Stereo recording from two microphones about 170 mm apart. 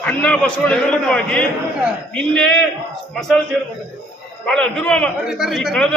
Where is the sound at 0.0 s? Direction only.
10° left (ahead or behind).